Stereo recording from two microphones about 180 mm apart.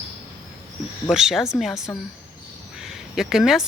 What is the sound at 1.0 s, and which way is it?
Speech, 5° right (ahead or behind).